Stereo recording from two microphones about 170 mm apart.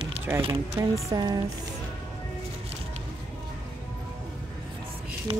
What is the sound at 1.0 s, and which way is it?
Music, 20° right (ahead or behind).